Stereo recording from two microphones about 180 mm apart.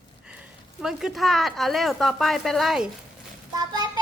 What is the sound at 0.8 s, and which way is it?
A woman's voice, centre (ahead or behind).